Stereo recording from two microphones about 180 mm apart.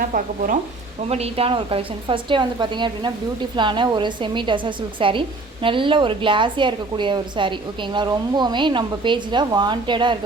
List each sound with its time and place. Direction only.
0.0 s speech: 50° right (ahead or behind)
1.0 s speech: 35° right (ahead or behind)